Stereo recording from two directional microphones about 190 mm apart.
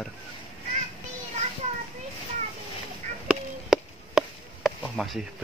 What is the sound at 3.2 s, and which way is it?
Chop, centre (ahead or behind).